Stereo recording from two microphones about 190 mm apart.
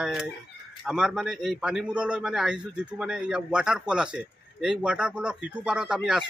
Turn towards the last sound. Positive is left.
turn(degrees=-5)  # may be behind; listen again after turning